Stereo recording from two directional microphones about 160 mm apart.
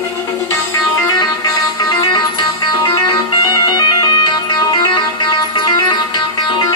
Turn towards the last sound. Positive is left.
turn(degrees=25)  # may be behind; listen again after turning